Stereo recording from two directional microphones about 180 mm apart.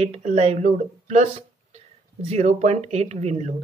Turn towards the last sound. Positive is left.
turn(degrees=-35)  # may be behind; listen again after turning